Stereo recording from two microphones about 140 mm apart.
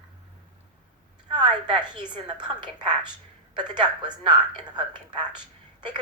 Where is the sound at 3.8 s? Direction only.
30° right (ahead or behind).